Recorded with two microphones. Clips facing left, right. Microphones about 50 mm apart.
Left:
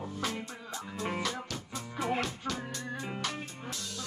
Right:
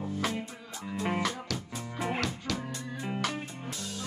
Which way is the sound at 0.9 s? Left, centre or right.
Centre.